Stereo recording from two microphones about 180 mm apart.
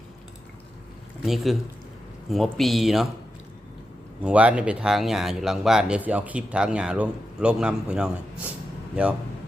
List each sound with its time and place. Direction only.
1.2 s speech: centre (ahead or behind)
4.2 s speech: 5° right (ahead or behind)